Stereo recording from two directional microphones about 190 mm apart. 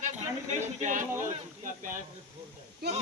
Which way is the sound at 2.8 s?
55° right (ahead or behind).